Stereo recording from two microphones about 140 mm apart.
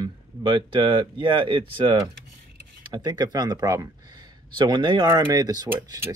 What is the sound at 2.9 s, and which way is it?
Speech, 30° right (ahead or behind).